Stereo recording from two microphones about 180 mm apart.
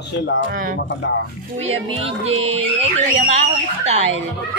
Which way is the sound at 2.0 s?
35° right (ahead or behind).